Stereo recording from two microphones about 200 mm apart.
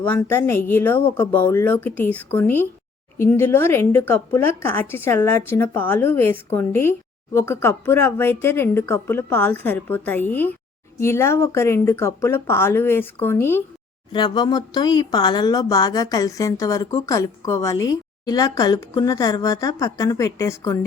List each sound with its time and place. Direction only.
0.0 s speech: 10° left (ahead or behind)
14.1 s speech: 20° left (ahead or behind)